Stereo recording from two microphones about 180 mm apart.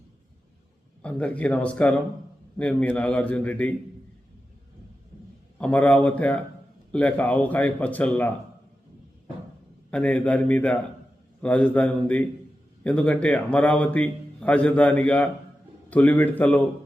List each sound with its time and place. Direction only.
1.0 s a man's voice: 5° left (ahead or behind)
5.5 s a man's voice: 5° left (ahead or behind)
9.9 s a man's voice: 5° left (ahead or behind)